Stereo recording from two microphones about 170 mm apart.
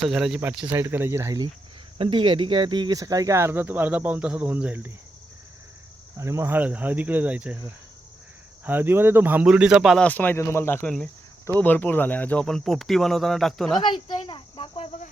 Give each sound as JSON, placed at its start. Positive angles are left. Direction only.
{"t": 0.0, "sound": "speech", "side_deg": -5}
{"t": 2.0, "sound": "speech", "side_deg": -30}
{"t": 6.1, "sound": "speech", "side_deg": -15}
{"t": 8.6, "sound": "speech", "side_deg": -10}
{"t": 10.1, "sound": "speech", "side_deg": 10}
{"t": 13.8, "sound": "speech", "side_deg": 30}